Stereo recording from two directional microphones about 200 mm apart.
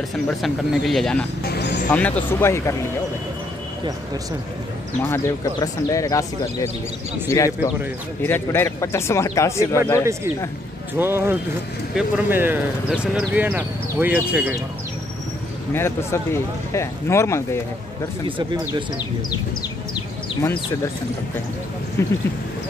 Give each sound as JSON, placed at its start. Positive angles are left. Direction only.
{"t": 0.1, "sound": "speech", "side_deg": 0}
{"t": 1.5, "sound": "music", "side_deg": 55}
{"t": 1.9, "sound": "speech", "side_deg": 5}
{"t": 5.0, "sound": "speech", "side_deg": 15}
{"t": 11.0, "sound": "speech", "side_deg": -10}
{"t": 15.7, "sound": "speech", "side_deg": 10}
{"t": 22.0, "sound": "speech", "side_deg": 15}